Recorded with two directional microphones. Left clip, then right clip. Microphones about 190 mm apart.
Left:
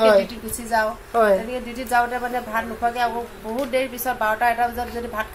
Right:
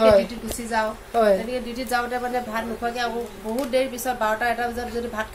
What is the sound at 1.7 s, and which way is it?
A woman's voice, 20° right (ahead or behind).